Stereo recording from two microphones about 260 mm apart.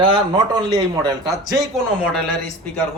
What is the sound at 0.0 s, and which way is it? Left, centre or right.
Speech, centre.